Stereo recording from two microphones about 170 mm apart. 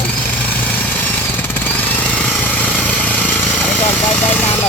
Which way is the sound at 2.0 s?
5° left (ahead or behind).